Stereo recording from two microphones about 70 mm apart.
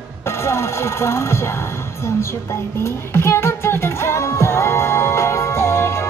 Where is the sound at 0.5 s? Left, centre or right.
Left.